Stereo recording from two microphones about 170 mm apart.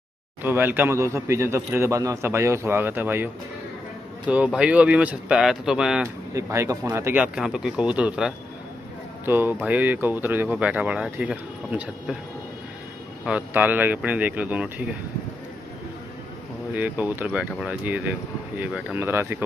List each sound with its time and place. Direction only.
0.4 s speech: 15° right (ahead or behind)
4.3 s speech: 5° right (ahead or behind)
6.3 s speech: 15° right (ahead or behind)
13.2 s speech: 10° right (ahead or behind)
16.7 s speech: 10° right (ahead or behind)